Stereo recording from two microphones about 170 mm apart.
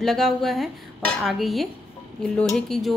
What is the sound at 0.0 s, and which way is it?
Speech, centre (ahead or behind).